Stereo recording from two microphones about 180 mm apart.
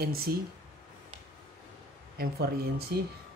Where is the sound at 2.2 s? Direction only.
60° right (ahead or behind).